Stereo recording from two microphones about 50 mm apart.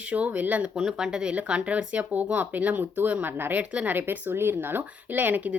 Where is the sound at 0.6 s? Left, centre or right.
Centre.